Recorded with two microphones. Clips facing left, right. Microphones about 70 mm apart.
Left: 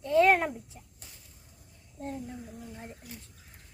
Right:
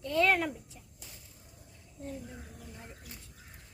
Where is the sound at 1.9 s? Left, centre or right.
Left.